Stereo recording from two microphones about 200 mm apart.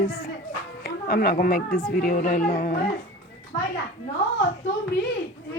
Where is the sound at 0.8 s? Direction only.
50° left (ahead or behind).